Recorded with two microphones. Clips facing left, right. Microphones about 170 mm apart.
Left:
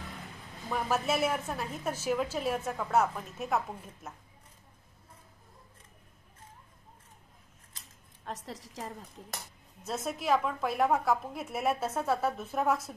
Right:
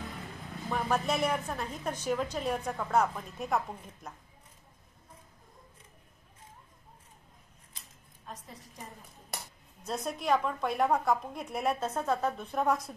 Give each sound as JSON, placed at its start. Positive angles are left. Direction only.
{"t": 0.7, "sound": "a woman's voice", "side_deg": 5}
{"t": 8.3, "sound": "a woman's voice", "side_deg": 80}
{"t": 9.8, "sound": "a woman's voice", "side_deg": 0}